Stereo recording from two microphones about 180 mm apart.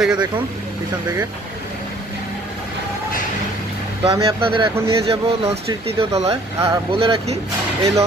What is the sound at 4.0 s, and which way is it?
Speech, 30° right (ahead or behind).